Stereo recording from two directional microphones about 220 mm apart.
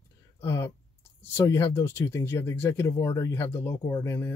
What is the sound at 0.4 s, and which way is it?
Speech, 10° left (ahead or behind).